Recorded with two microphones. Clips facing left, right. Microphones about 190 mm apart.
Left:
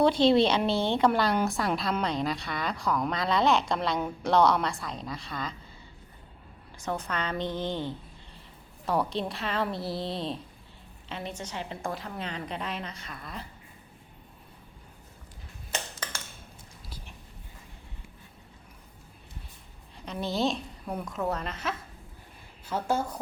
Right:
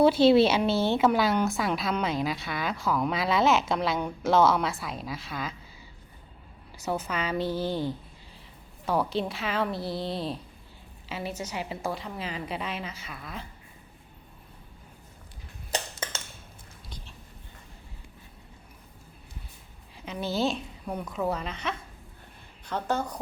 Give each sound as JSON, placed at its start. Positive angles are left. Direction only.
{"t": 0.0, "sound": "a woman's voice", "side_deg": -5}
{"t": 6.7, "sound": "a woman's voice", "side_deg": -5}
{"t": 15.7, "sound": "a sound", "side_deg": -25}
{"t": 20.1, "sound": "a woman's voice", "side_deg": 0}